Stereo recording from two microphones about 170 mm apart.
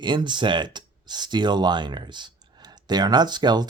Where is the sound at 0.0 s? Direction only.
25° right (ahead or behind).